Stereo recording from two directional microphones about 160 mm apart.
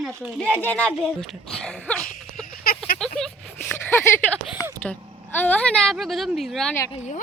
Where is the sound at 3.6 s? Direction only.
15° left (ahead or behind).